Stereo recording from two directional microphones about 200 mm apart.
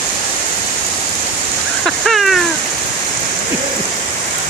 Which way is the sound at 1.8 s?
Centre (ahead or behind).